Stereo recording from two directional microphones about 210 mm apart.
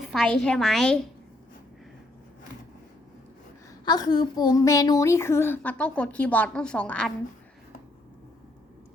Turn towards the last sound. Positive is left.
turn(degrees=5)  # may be behind; listen again after turning